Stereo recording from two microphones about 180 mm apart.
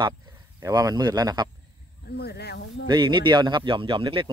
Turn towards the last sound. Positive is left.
turn(degrees=-30)  # may be behind; listen again after turning